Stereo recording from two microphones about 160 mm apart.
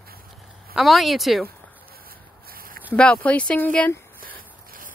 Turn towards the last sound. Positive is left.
turn(degrees=-65)  # may be behind; listen again after turning